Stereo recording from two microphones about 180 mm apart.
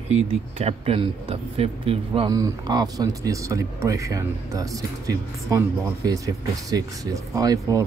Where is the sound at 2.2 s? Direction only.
20° right (ahead or behind).